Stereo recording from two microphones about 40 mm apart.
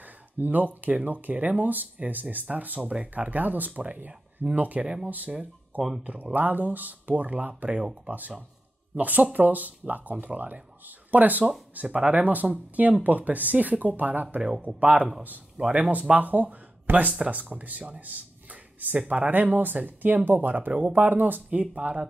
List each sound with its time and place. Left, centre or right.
0.4 s speech: right
2.9 s speech: right
3.3 s speech: right
4.8 s speech: right
6.3 s speech: right
8.9 s speech: right
16.9 s speech: right
17.3 s speech: right
18.0 s a sound: right
18.9 s speech: right
19.3 s speech: right
21.5 s speech: right